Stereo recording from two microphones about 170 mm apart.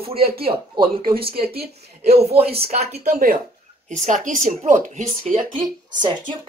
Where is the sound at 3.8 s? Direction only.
45° right (ahead or behind).